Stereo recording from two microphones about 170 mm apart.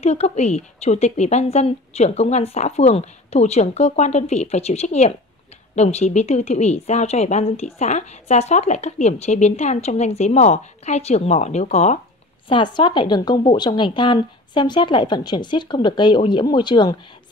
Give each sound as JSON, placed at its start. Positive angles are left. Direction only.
{"t": 0.0, "sound": "a woman's voice", "side_deg": 40}
{"t": 12.4, "sound": "a woman's voice", "side_deg": 30}